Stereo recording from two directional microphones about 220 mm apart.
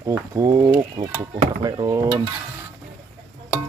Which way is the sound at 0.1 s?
15° right (ahead or behind).